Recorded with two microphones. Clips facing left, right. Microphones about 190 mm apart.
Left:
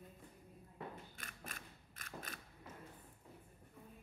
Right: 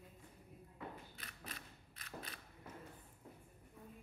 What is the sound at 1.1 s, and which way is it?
Mechanisms, 50° left (ahead or behind).